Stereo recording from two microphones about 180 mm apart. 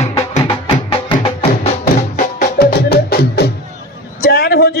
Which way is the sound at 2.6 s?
60° left (ahead or behind).